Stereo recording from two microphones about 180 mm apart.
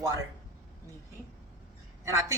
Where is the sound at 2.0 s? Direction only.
15° right (ahead or behind).